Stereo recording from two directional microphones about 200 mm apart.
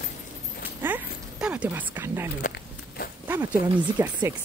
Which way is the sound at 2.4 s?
45° left (ahead or behind).